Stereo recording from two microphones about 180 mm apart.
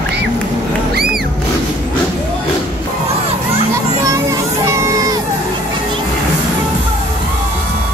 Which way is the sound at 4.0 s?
15° right (ahead or behind).